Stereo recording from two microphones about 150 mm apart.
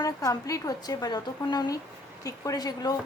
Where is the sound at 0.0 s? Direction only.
25° left (ahead or behind).